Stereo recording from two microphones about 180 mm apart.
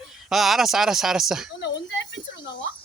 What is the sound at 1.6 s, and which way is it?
Speech, 90° left.